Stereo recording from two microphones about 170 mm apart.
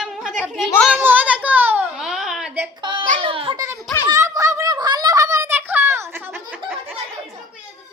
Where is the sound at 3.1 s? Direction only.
30° right (ahead or behind).